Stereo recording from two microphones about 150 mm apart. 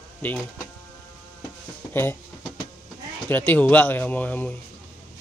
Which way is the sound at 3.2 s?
15° left (ahead or behind).